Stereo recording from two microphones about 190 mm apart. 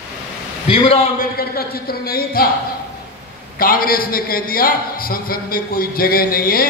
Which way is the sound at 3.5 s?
50° left (ahead or behind).